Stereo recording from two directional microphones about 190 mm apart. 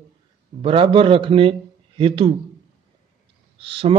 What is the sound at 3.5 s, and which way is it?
Speech, 30° right (ahead or behind).